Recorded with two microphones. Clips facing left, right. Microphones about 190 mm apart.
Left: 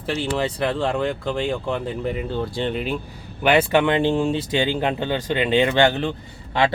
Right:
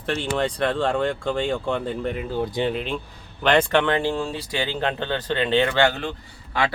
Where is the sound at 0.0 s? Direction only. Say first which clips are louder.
Left 1 dB; 5° left (ahead or behind).